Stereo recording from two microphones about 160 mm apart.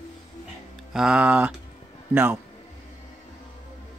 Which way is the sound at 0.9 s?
5° right (ahead or behind).